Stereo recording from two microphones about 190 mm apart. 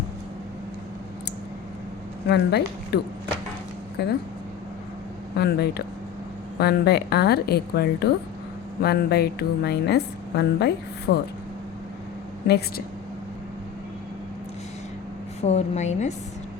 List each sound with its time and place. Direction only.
2.2 s speech: 60° left (ahead or behind)
5.4 s speech: 60° left (ahead or behind)
12.5 s speech: 55° left (ahead or behind)
15.4 s a woman's voice: 35° left (ahead or behind)